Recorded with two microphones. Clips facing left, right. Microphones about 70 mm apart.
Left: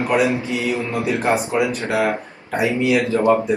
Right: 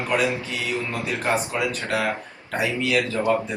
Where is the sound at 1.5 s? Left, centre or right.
Left.